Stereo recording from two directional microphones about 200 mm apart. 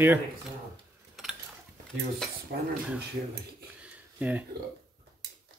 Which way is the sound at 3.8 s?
5° right (ahead or behind).